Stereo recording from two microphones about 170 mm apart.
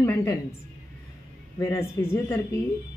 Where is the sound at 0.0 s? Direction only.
15° left (ahead or behind).